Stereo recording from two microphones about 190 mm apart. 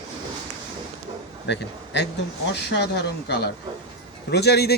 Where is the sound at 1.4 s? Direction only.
65° left (ahead or behind).